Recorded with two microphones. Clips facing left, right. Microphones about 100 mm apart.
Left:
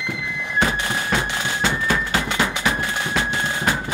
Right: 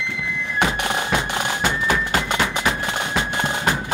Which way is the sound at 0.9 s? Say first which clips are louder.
Right 1 dB; 20° right (ahead or behind).